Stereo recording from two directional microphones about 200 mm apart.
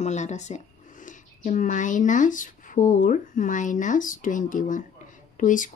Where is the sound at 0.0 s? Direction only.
35° left (ahead or behind).